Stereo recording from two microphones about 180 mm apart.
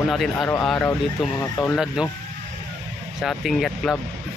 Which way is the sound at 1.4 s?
20° left (ahead or behind).